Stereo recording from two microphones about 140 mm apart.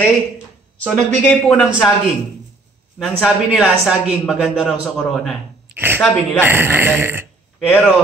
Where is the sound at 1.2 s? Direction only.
10° left (ahead or behind).